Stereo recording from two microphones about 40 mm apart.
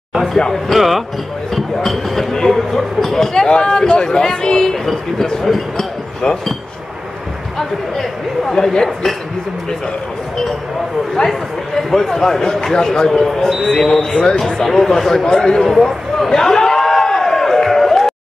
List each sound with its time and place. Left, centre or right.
0.7 s speech: centre
3.4 s speech: left
5.8 s speech: centre
7.5 s speech: centre
11.2 s speech: left
11.9 s speech: centre
15.8 s a sound: centre